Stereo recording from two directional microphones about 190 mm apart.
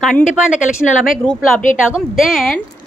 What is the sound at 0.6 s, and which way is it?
Speech, 45° left (ahead or behind).